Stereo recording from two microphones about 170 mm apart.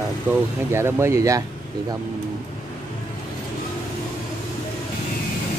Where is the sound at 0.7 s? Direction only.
15° right (ahead or behind).